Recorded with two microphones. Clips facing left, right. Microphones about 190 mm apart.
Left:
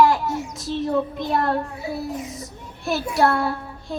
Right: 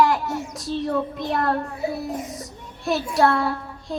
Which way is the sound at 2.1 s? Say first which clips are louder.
Right 1 dB; 50° right (ahead or behind).